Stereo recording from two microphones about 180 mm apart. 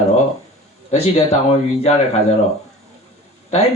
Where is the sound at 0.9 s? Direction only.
35° left (ahead or behind).